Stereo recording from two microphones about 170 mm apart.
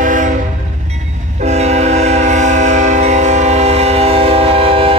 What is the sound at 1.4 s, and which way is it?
Train, 40° right (ahead or behind).